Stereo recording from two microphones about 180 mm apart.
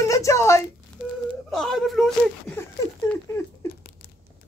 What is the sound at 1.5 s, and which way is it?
Speech, centre (ahead or behind).